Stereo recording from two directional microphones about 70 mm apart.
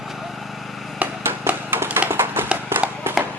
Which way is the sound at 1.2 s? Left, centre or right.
Right.